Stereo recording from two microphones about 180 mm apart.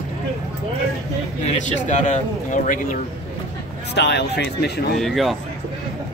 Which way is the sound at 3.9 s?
70° left (ahead or behind).